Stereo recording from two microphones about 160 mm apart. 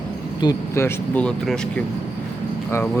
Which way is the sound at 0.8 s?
10° left (ahead or behind).